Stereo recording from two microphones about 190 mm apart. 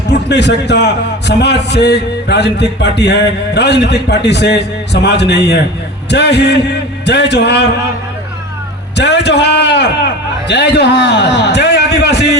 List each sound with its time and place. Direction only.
0.1 s a man's voice: 65° left (ahead or behind)
9.0 s a man's voice: 65° left (ahead or behind)